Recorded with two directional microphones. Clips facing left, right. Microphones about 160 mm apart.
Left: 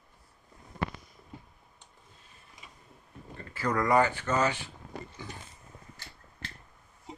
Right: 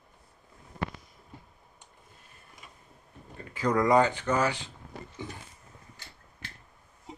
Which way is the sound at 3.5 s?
15° right (ahead or behind).